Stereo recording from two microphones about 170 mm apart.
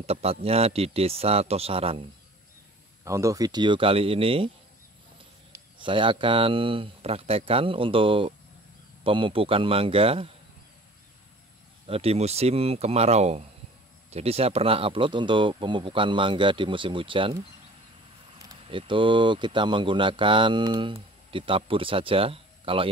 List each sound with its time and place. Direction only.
0.0 s speech: 35° right (ahead or behind)
3.0 s speech: 20° right (ahead or behind); by 4.5 s 35° right (ahead or behind)
5.8 s speech: 30° right (ahead or behind)
11.8 s speech: 35° right (ahead or behind)
18.7 s speech: 30° right (ahead or behind)